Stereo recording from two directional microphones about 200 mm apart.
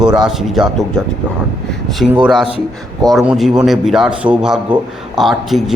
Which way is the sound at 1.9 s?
Centre (ahead or behind).